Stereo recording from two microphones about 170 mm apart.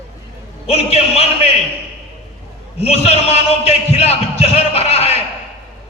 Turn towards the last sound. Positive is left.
turn(degrees=35)  # may be behind; listen again after turning